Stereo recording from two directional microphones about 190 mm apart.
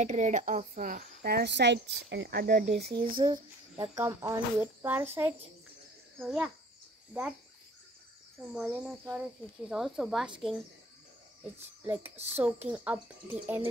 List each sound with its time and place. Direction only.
0.0 s speech: 40° right (ahead or behind)
3.9 s speech: 15° right (ahead or behind)
8.4 s speech: 5° right (ahead or behind)
11.8 s speech: 10° right (ahead or behind)
12.2 s speech: 35° right (ahead or behind)
12.6 s speech: 5° right (ahead or behind)